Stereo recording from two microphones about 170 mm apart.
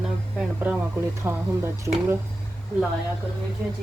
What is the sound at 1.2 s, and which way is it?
Speech, 15° right (ahead or behind).